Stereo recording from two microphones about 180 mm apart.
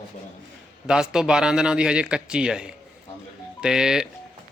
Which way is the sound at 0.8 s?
5° right (ahead or behind).